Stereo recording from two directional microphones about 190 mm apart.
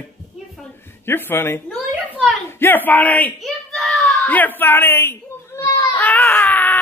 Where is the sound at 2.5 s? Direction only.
10° left (ahead or behind).